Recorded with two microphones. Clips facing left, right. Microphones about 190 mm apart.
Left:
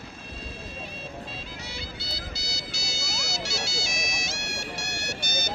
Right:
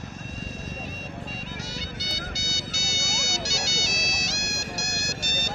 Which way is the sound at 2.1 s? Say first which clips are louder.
Right 3 dB; 40° right (ahead or behind).